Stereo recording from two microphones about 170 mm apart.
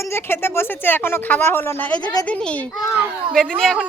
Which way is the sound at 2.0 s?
25° left (ahead or behind).